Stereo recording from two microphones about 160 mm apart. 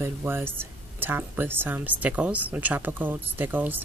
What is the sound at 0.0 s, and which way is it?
Speech, 15° right (ahead or behind).